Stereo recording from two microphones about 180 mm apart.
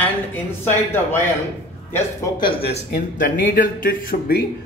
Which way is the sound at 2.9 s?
50° left (ahead or behind).